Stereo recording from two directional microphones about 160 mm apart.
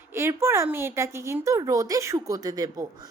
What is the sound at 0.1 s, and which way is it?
A woman's voice, 15° right (ahead or behind).